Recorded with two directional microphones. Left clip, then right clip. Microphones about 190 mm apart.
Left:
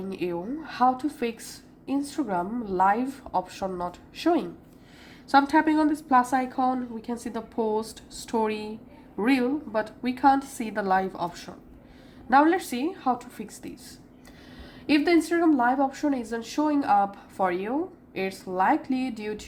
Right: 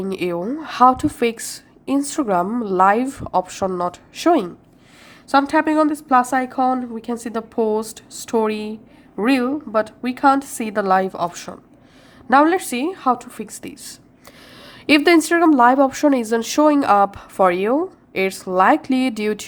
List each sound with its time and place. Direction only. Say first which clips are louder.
0.1 s a woman's voice: right 6 dB; 40° right (ahead or behind)